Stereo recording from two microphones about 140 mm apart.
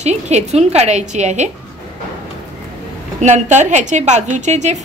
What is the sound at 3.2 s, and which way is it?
A woman's voice, 60° right (ahead or behind).